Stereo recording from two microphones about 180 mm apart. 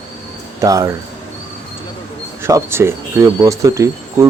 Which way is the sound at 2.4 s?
15° right (ahead or behind).